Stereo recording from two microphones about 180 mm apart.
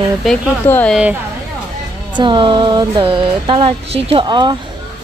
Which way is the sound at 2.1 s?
25° right (ahead or behind).